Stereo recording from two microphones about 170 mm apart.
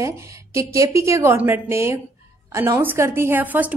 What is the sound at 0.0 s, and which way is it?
Speech, 20° right (ahead or behind).